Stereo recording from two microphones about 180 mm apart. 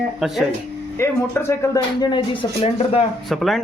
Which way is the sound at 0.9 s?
15° left (ahead or behind).